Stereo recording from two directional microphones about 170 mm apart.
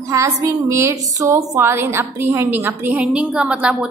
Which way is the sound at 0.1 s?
20° right (ahead or behind).